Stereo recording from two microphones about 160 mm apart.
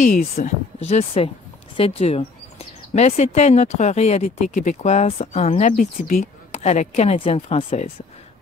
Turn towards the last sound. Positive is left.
turn(degrees=40)  # may be behind; listen again after turning